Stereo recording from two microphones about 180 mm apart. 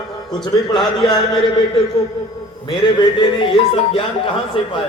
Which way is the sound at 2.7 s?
25° left (ahead or behind).